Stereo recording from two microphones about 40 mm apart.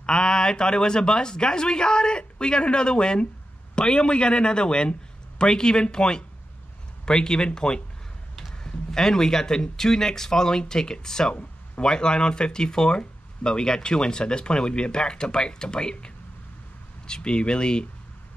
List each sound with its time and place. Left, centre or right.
0.0 s speech: centre
17.1 s speech: left